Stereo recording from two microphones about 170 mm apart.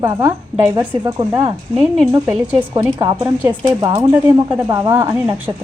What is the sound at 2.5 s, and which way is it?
Speech, 20° right (ahead or behind).